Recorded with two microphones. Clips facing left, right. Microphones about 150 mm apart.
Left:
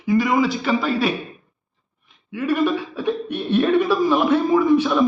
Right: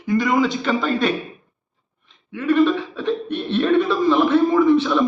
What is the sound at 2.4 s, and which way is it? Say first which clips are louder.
Speech: right 3 dB; 10° left (ahead or behind).